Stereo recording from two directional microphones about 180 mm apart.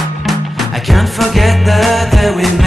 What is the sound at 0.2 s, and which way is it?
Music, centre (ahead or behind).